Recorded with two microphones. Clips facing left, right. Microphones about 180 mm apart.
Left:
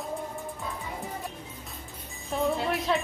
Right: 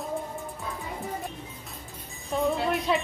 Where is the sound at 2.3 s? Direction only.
Centre (ahead or behind).